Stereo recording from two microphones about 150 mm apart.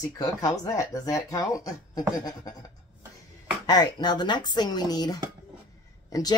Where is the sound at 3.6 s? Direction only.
30° left (ahead or behind).